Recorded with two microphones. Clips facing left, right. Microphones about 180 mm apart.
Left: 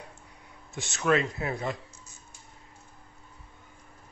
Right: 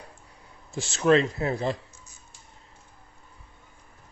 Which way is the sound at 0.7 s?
30° right (ahead or behind).